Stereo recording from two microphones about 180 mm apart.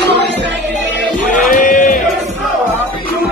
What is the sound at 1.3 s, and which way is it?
Music, 50° left (ahead or behind).